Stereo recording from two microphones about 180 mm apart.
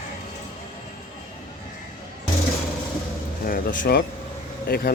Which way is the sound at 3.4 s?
55° left (ahead or behind).